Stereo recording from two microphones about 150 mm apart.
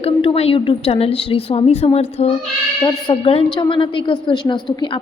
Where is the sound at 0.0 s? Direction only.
40° left (ahead or behind).